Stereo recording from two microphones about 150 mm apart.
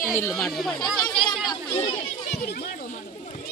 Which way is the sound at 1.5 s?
30° left (ahead or behind).